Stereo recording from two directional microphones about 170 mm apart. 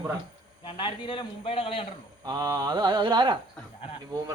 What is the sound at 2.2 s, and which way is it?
Speech, 25° right (ahead or behind).